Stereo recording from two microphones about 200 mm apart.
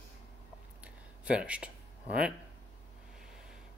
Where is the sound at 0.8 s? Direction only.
5° right (ahead or behind).